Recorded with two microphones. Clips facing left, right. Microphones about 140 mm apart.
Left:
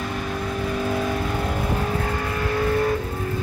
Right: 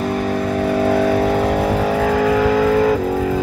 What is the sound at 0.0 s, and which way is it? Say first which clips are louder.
Vehicle: right 9 dB; 65° right (ahead or behind).